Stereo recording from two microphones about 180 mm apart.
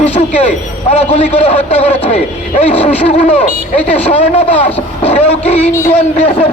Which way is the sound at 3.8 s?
10° left (ahead or behind).